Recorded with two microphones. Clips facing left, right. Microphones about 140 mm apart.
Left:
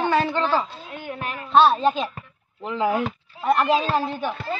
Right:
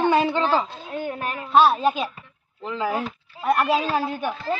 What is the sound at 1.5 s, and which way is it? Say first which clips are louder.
Speech: left 1 dB; 5° right (ahead or behind).